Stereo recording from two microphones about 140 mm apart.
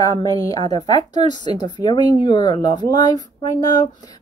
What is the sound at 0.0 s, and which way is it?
Speech, 25° left (ahead or behind).